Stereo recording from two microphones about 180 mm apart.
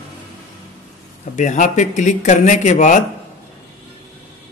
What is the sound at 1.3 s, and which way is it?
Speech, 40° left (ahead or behind).